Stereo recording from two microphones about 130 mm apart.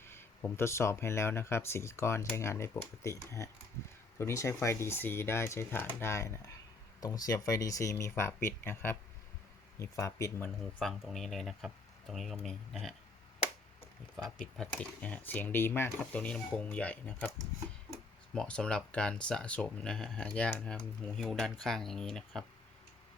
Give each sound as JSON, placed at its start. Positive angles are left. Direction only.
{"t": 0.0, "sound": "speech", "side_deg": 20}
{"t": 10.8, "sound": "speech", "side_deg": 0}
{"t": 14.6, "sound": "speech", "side_deg": 10}
{"t": 18.3, "sound": "speech", "side_deg": 5}